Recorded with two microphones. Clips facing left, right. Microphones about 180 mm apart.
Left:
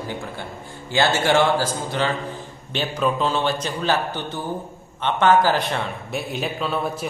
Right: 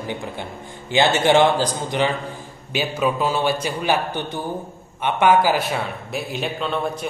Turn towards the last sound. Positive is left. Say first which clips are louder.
# right 1 dB
turn(degrees=5)  # may be behind; listen again after turning